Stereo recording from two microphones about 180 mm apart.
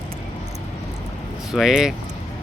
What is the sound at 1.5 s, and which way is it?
Speech, 5° right (ahead or behind).